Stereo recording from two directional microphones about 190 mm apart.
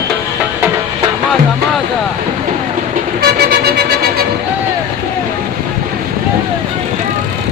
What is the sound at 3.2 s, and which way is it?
Vehicle, 55° right (ahead or behind).